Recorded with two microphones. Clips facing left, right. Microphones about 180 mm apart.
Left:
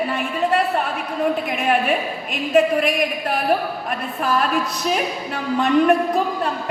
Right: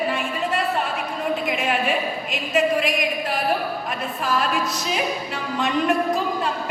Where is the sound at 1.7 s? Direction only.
55° left (ahead or behind).